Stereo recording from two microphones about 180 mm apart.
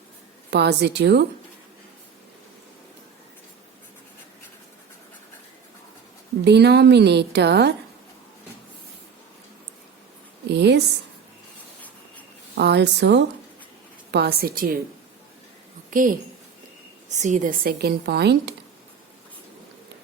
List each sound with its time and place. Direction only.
0.5 s a woman's voice: 70° right (ahead or behind)
6.4 s a woman's voice: 70° right (ahead or behind)
10.5 s a woman's voice: 70° right (ahead or behind)
12.5 s a woman's voice: 70° right (ahead or behind); by 14.7 s 55° right (ahead or behind)
15.9 s a woman's voice: 50° right (ahead or behind); by 18.5 s 70° right (ahead or behind)